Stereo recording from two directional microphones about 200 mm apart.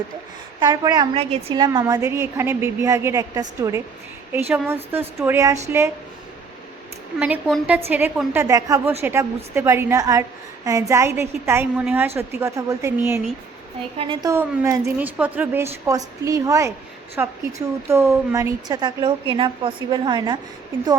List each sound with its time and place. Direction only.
0.6 s a woman's voice: 20° right (ahead or behind)
7.2 s a woman's voice: 5° right (ahead or behind); by 20.4 s 20° right (ahead or behind)